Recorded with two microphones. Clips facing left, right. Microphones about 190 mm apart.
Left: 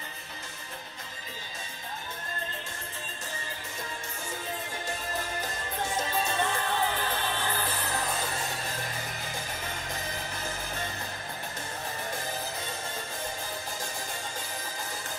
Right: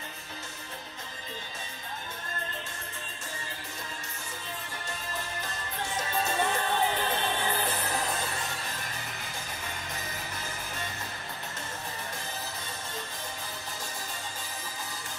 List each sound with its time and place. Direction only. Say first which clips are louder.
6.4 s music: right 1 dB; 20° right (ahead or behind)